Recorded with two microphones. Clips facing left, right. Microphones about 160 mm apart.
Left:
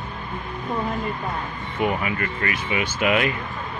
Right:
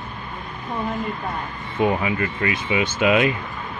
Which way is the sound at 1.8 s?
25° right (ahead or behind).